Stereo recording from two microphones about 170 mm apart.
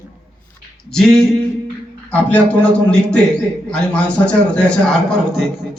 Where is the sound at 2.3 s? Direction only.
10° left (ahead or behind).